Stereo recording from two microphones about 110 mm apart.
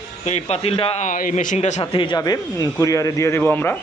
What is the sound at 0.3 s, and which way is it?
A man's voice, 85° left.